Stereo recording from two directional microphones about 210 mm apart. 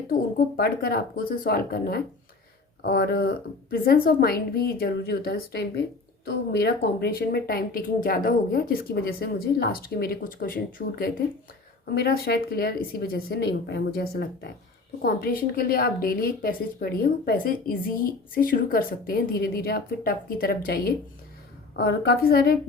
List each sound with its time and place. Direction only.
0.1 s a woman's voice: 45° left (ahead or behind)